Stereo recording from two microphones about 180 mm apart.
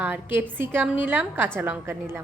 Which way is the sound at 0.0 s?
10° right (ahead or behind).